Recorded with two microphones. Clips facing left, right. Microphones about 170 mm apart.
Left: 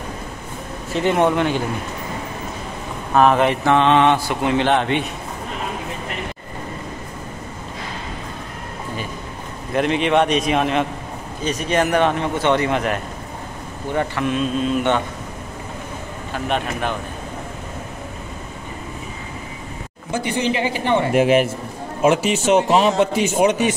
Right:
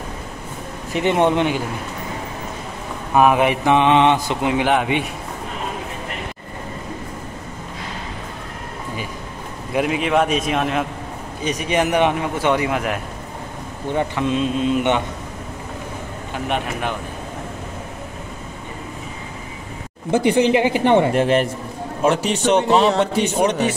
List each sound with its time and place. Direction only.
0.9 s mantra: 20° right (ahead or behind)
3.2 s speech: 10° right (ahead or behind)
9.7 s a man's voice: 5° right (ahead or behind)
11.4 s speech: 15° right (ahead or behind)
13.9 s mantra: 20° right (ahead or behind)
16.4 s speech: 15° right (ahead or behind)
20.1 s a woman's voice: 60° right (ahead or behind)
21.1 s a man's voice: 5° left (ahead or behind)